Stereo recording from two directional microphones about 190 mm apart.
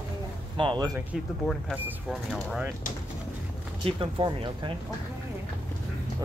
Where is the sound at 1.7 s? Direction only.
5° right (ahead or behind).